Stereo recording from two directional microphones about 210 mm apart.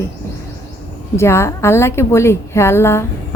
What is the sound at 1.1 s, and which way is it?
A woman's voice, 10° left (ahead or behind).